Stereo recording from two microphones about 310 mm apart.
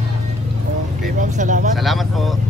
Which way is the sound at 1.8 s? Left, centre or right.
Centre.